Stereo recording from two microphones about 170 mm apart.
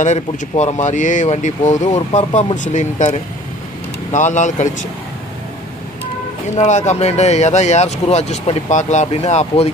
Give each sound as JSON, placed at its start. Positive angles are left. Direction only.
{"t": 0.0, "sound": "speech", "side_deg": 45}
{"t": 6.5, "sound": "speech", "side_deg": 45}